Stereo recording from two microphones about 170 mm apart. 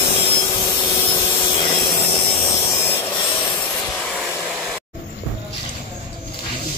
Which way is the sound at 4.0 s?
5° left (ahead or behind).